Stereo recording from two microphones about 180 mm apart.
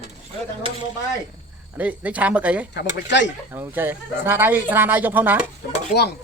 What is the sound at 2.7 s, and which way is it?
Speech, 80° left.